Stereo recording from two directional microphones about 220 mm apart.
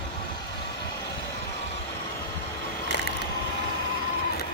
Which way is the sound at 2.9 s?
55° left (ahead or behind).